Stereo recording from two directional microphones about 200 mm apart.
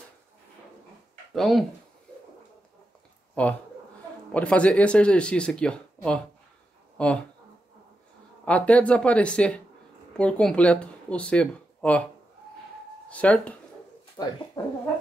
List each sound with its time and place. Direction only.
1.3 s speech: centre (ahead or behind)
3.4 s speech: 5° left (ahead or behind)
8.5 s speech: 5° left (ahead or behind)
13.1 s speech: 5° left (ahead or behind)
14.2 s speech: 15° left (ahead or behind)